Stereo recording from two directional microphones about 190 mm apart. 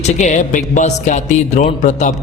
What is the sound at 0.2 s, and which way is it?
Speech, 40° left (ahead or behind).